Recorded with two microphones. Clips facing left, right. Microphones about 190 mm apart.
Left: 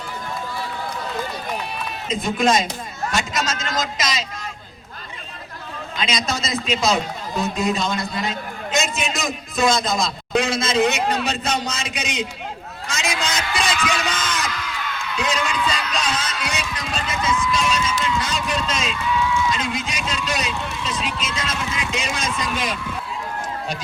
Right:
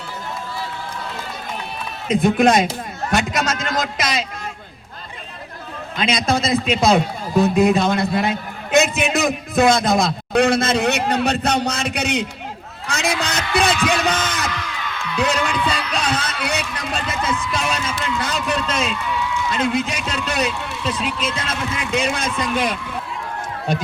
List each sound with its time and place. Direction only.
2.0 s a man's voice: 60° right (ahead or behind)
6.0 s a man's voice: 55° right (ahead or behind)
15.1 s heart murmur: 60° right (ahead or behind)
19.5 s a man's voice: 60° right (ahead or behind)